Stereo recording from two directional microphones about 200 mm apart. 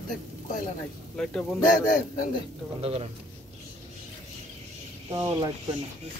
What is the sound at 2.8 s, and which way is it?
Speech, 30° right (ahead or behind).